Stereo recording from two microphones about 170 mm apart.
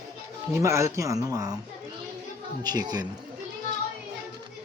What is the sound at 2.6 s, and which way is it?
Speech, 25° right (ahead or behind).